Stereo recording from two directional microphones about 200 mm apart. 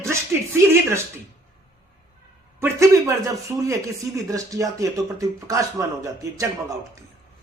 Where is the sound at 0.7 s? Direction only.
15° right (ahead or behind).